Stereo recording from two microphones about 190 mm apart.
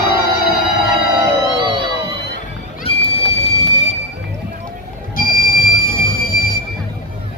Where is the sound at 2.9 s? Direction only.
30° left (ahead or behind).